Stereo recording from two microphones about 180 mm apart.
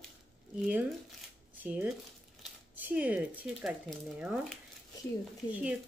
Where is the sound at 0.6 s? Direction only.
10° right (ahead or behind).